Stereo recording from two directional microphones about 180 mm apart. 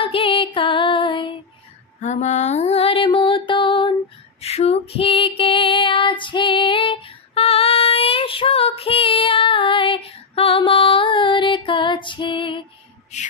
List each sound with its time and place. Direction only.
0.0 s music: 30° left (ahead or behind)
2.0 s mantra: 40° left (ahead or behind)
4.4 s female singing: 35° left (ahead or behind)